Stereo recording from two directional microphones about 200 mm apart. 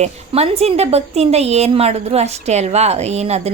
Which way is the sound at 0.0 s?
30° right (ahead or behind).